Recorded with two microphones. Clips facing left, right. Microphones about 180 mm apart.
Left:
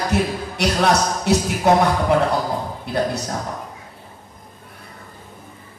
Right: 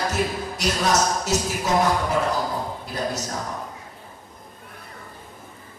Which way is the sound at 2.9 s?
60° left (ahead or behind).